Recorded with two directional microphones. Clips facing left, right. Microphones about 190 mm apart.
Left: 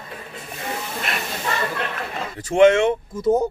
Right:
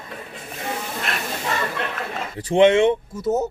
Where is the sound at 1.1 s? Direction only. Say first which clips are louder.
Left 1 dB; centre (ahead or behind).